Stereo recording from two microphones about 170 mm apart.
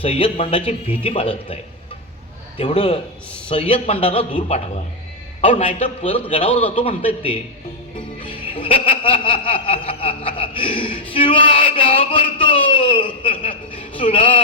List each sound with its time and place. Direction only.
0.0 s speech: 35° left (ahead or behind)
2.7 s speech: 40° left (ahead or behind)
6.5 s a man's voice: 10° left (ahead or behind)
6.7 s speech: 35° left (ahead or behind)